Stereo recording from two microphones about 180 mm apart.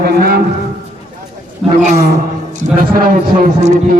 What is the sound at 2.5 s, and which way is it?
A man's voice, 50° right (ahead or behind).